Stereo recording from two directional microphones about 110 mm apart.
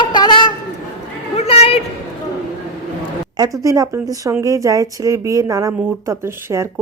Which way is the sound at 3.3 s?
35° right (ahead or behind).